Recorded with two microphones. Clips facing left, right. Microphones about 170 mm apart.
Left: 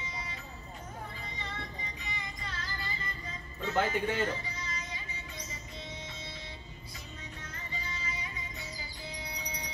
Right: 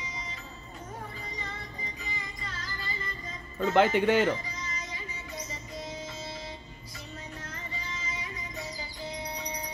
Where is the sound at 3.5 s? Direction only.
80° right.